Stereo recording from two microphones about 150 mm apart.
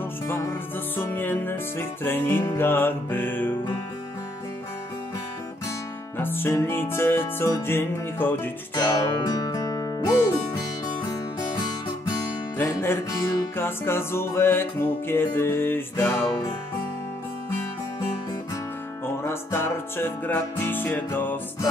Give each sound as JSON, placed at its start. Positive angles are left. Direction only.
{"t": 0.3, "sound": "music", "side_deg": 15}
{"t": 6.1, "sound": "music", "side_deg": 15}
{"t": 12.5, "sound": "music", "side_deg": 15}
{"t": 19.2, "sound": "music", "side_deg": 15}